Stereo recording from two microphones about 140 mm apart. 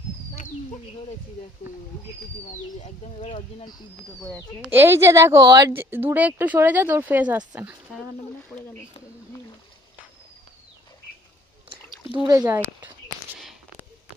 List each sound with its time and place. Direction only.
3.2 s speech: 40° left (ahead or behind)
4.6 s speech: 15° right (ahead or behind)
11.7 s a sound: 35° right (ahead or behind)